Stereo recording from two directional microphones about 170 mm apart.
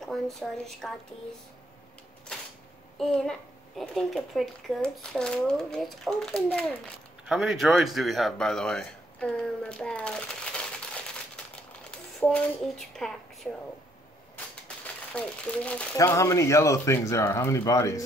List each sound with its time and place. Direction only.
0.0 s speech: centre (ahead or behind)
3.0 s speech: 5° left (ahead or behind)
15.1 s speech: 5° left (ahead or behind)
16.0 s speech: 20° left (ahead or behind)